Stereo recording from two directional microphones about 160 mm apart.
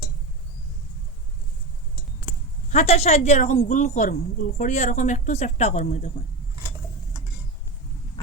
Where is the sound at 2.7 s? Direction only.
40° left (ahead or behind).